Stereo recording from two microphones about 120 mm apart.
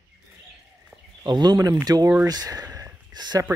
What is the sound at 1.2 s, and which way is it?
Speech, 35° right (ahead or behind).